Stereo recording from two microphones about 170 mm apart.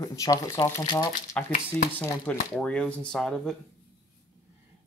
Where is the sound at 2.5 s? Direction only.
5° left (ahead or behind).